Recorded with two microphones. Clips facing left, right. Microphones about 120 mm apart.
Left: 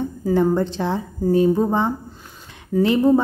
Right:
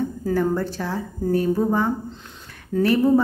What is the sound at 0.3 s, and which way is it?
A woman's voice, 20° left (ahead or behind).